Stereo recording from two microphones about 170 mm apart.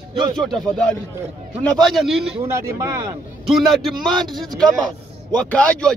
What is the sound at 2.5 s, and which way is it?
Speech, 15° right (ahead or behind).